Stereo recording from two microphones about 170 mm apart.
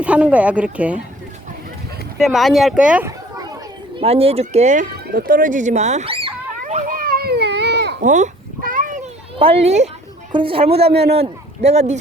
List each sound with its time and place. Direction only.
0.0 s speech: 5° right (ahead or behind)
2.1 s speech: centre (ahead or behind)
4.0 s a sound: 35° right (ahead or behind); by 7.9 s 80° right
8.0 s a sound: 45° right (ahead or behind)
9.4 s speech: 35° right (ahead or behind)
10.8 s a man's voice: 70° right (ahead or behind)
11.1 s speech: 40° right (ahead or behind)